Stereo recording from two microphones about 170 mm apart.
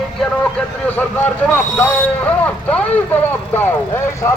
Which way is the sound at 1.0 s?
10° left (ahead or behind).